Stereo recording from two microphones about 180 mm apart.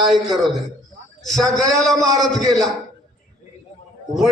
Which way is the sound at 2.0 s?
20° right (ahead or behind).